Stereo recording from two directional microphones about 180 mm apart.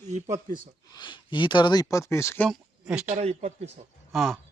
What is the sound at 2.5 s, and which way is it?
Speech, 5° right (ahead or behind).